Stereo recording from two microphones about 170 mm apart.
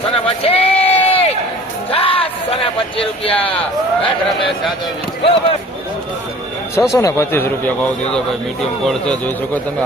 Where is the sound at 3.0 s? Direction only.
35° left (ahead or behind).